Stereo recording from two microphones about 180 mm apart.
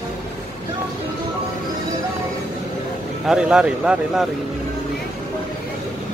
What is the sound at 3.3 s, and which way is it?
Speech, 5° right (ahead or behind).